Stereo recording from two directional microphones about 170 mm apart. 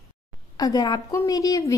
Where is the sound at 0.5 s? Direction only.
20° left (ahead or behind).